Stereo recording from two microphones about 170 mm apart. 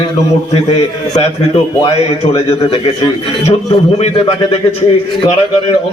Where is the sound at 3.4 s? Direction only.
40° left (ahead or behind).